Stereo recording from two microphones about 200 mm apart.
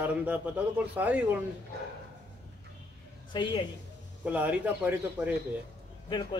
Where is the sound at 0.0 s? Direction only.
5° right (ahead or behind).